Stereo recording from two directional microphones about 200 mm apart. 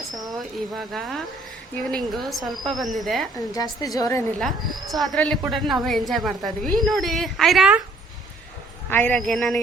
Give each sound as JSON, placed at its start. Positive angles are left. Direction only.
{"t": 0.8, "sound": "a woman's voice", "side_deg": 0}
{"t": 3.5, "sound": "a woman's voice", "side_deg": 15}
{"t": 4.4, "sound": "a woman's voice", "side_deg": 0}
{"t": 8.9, "sound": "a woman's voice", "side_deg": 10}